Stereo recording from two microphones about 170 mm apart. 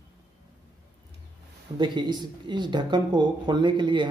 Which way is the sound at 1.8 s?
25° right (ahead or behind).